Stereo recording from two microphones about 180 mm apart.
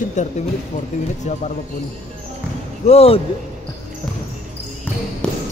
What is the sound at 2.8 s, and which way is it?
Speech, 35° left (ahead or behind).